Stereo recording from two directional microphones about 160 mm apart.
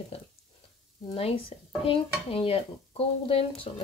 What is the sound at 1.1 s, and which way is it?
Speech, 35° left (ahead or behind).